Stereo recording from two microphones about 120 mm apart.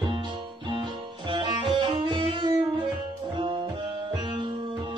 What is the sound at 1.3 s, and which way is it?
Music, 40° right (ahead or behind).